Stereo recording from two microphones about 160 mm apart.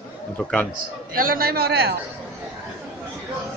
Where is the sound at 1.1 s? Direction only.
70° right (ahead or behind); by 2.0 s 85° right.